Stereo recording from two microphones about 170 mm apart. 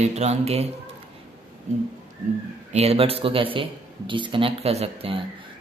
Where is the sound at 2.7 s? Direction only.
35° right (ahead or behind).